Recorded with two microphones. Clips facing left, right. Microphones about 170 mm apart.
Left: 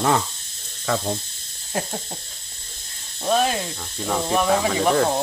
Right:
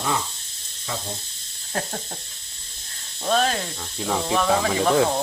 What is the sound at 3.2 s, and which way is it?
Speech, 10° left (ahead or behind).